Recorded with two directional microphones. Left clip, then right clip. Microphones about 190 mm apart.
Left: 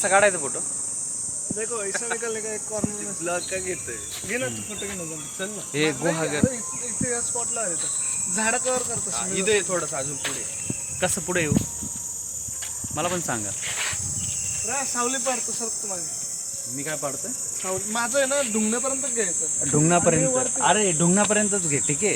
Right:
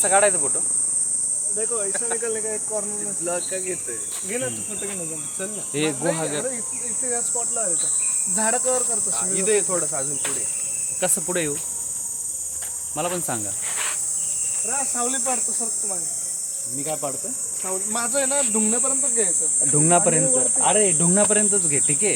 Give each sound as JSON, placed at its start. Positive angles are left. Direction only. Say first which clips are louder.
{"t": 0.0, "sound": "speech", "louder": "even", "side_deg": 15}
{"t": 1.5, "sound": "speech", "louder": "even", "side_deg": -5}
{"t": 3.2, "sound": "speech", "louder": "even", "side_deg": -15}
{"t": 4.3, "sound": "speech", "louder": "left 1 dB", "side_deg": -5}
{"t": 5.7, "sound": "speech", "louder": "even", "side_deg": 10}
{"t": 8.4, "sound": "cricket", "louder": "right 1 dB", "side_deg": -20}
{"t": 9.1, "sound": "speech", "louder": "even", "side_deg": -50}
{"t": 11.0, "sound": "speech", "louder": "even", "side_deg": 5}
{"t": 13.0, "sound": "speech", "louder": "even", "side_deg": 5}
{"t": 14.7, "sound": "speech", "louder": "left 1 dB", "side_deg": -10}
{"t": 16.8, "sound": "speech", "louder": "right 1 dB", "side_deg": 0}
{"t": 19.7, "sound": "speech", "louder": "even", "side_deg": 15}